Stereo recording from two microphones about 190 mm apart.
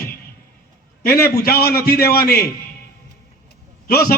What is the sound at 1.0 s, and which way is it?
A man's voice, 50° left (ahead or behind).